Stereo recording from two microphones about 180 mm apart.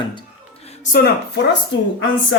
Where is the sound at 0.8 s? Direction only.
50° left (ahead or behind).